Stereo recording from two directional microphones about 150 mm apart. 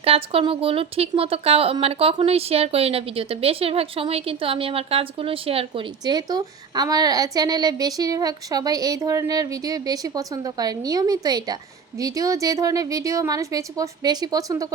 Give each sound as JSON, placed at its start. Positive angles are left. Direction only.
{"t": 0.0, "sound": "a woman's voice", "side_deg": -40}